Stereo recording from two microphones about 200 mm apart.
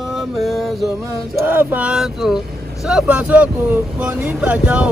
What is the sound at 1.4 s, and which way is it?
Speech, 10° right (ahead or behind).